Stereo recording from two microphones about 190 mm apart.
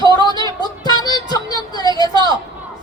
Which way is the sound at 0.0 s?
20° left (ahead or behind).